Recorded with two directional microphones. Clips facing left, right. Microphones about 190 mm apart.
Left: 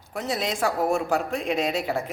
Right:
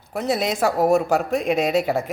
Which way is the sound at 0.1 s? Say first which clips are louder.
Right 5 dB; 40° right (ahead or behind).